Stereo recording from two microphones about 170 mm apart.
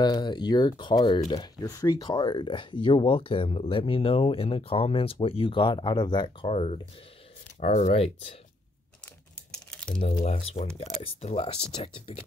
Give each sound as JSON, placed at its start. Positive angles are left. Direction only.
{"t": 0.0, "sound": "speech", "side_deg": 25}
{"t": 9.5, "sound": "crumpling", "side_deg": 5}
{"t": 10.0, "sound": "speech", "side_deg": 45}